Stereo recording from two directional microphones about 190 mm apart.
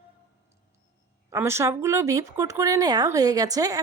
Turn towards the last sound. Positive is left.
turn(degrees=-20)  # may be behind; listen again after turning